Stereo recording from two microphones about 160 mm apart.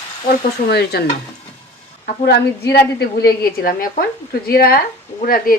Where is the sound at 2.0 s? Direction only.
90° left.